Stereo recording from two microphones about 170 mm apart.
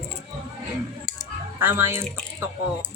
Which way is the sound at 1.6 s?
15° right (ahead or behind).